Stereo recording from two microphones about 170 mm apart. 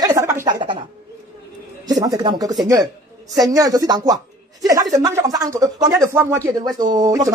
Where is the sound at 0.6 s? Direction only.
30° right (ahead or behind).